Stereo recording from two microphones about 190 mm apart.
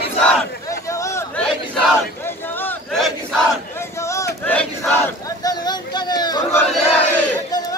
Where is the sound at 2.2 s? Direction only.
10° left (ahead or behind).